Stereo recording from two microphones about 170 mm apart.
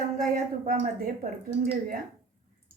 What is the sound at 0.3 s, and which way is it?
Speech, 55° right (ahead or behind).